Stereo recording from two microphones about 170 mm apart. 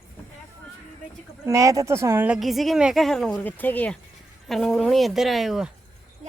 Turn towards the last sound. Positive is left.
turn(degrees=0)  # may be behind; listen again after turning